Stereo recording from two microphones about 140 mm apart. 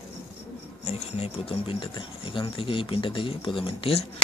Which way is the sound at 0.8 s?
50° left (ahead or behind).